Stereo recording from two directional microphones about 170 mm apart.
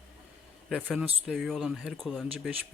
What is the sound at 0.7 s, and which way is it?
A man's voice, centre (ahead or behind).